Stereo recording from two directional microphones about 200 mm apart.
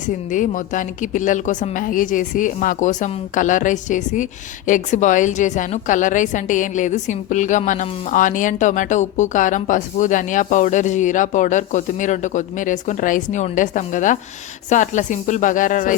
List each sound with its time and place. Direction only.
0.3 s a woman's voice: 40° left (ahead or behind)